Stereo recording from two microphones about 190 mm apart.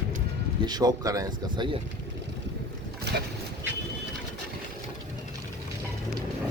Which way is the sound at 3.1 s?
60° right (ahead or behind).